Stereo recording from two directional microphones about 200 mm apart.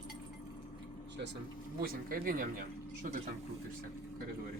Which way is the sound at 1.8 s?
45° right (ahead or behind).